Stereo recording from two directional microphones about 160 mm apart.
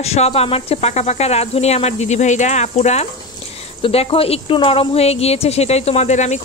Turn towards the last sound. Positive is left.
turn(degrees=45)  # may be behind; listen again after turning